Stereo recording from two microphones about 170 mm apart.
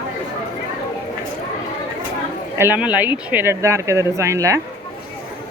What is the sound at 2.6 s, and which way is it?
A woman's voice, 10° right (ahead or behind).